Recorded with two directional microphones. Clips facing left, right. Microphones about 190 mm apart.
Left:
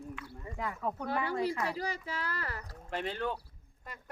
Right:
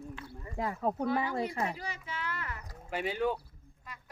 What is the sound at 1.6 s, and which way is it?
Speech, 35° left (ahead or behind).